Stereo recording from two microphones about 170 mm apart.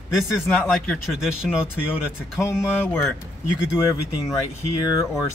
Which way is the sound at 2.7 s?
10° left (ahead or behind).